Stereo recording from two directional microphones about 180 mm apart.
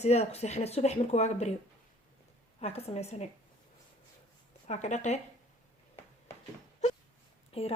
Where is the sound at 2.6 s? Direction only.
35° left (ahead or behind).